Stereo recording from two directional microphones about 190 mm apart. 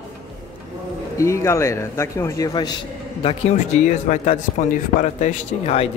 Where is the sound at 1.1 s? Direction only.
15° left (ahead or behind).